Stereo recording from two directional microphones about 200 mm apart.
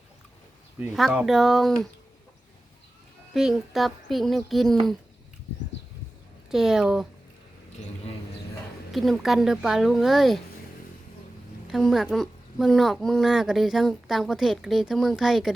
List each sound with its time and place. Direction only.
0.8 s speech: 5° right (ahead or behind)
3.3 s speech: centre (ahead or behind)
6.5 s speech: centre (ahead or behind)
8.9 s speech: centre (ahead or behind)
11.7 s speech: centre (ahead or behind)